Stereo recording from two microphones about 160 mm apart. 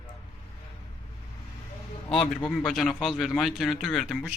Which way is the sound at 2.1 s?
5° left (ahead or behind).